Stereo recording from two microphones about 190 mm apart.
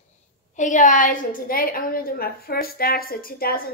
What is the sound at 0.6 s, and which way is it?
A woman's voice, 40° left (ahead or behind).